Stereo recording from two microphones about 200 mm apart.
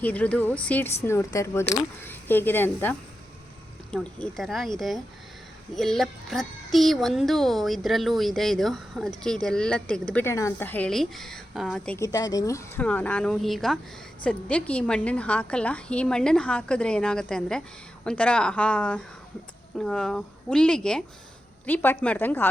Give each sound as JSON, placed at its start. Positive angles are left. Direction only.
{"t": 0.0, "sound": "a woman's voice", "side_deg": 10}
{"t": 3.9, "sound": "a child's voice", "side_deg": 5}
{"t": 11.9, "sound": "a woman's voice", "side_deg": 15}